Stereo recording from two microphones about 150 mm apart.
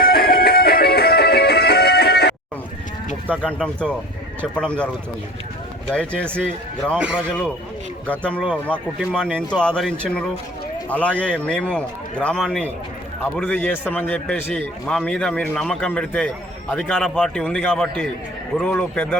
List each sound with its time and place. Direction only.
0.0 s music: 80° left
3.4 s a man's voice: 5° left (ahead or behind)
5.9 s a man's voice: 5° left (ahead or behind)
9.6 s a man's voice: 5° left (ahead or behind)